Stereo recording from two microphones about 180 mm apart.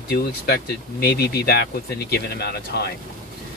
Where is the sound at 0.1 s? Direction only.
60° left (ahead or behind).